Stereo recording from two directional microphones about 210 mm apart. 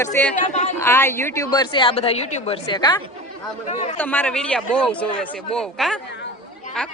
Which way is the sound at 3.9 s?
10° left (ahead or behind).